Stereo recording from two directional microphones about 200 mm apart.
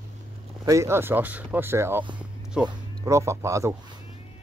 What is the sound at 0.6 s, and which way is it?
Speech, 15° right (ahead or behind).